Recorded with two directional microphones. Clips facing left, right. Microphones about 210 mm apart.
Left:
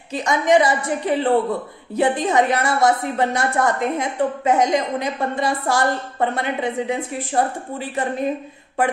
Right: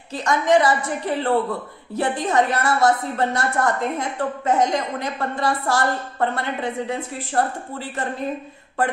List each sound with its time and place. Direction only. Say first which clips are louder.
0.1 s a woman's voice: left 1 dB; 15° left (ahead or behind)